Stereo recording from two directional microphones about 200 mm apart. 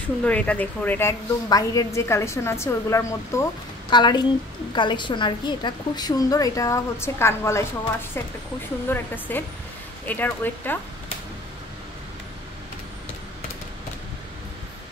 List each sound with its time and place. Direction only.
0.2 s a woman's voice: 5° left (ahead or behind)
8.8 s a woman's voice: 10° left (ahead or behind)